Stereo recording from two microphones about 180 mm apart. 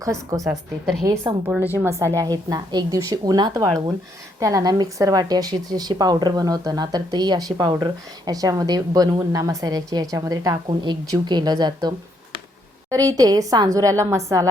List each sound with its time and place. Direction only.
0.0 s a woman's voice: 20° right (ahead or behind)